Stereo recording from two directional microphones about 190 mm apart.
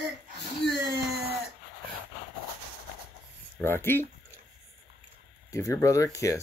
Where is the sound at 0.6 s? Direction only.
65° left (ahead or behind).